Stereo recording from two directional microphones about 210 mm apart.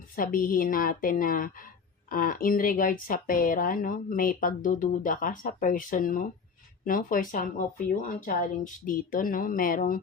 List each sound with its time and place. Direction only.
0.2 s speech: 40° left (ahead or behind)